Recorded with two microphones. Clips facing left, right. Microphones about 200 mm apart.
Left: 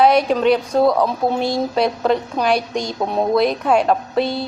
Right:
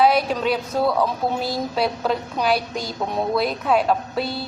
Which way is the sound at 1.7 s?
Centre (ahead or behind).